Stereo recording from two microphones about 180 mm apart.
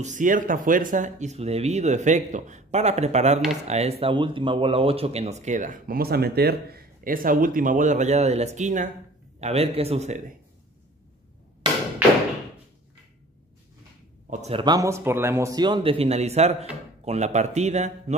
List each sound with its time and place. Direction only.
0.0 s speech: 45° right (ahead or behind)
14.3 s speech: 40° right (ahead or behind)
14.6 s a man's voice: 20° right (ahead or behind); by 18.1 s 40° right (ahead or behind)